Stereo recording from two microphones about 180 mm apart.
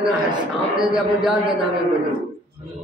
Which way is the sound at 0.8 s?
5° right (ahead or behind).